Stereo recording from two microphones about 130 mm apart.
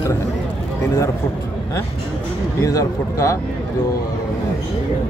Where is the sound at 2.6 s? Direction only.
25° left (ahead or behind).